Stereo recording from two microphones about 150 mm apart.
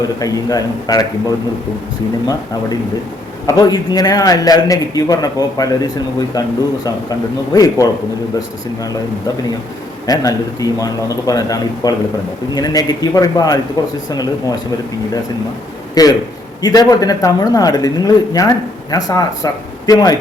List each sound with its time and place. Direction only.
0.2 s a man's voice: 25° left (ahead or behind)
3.4 s a man's voice: 25° left (ahead or behind)
10.1 s a man's voice: 25° left (ahead or behind)
16.0 s a man's voice: 25° left (ahead or behind)